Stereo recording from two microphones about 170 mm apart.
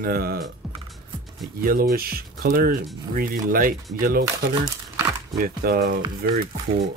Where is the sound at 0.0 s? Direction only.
60° right (ahead or behind).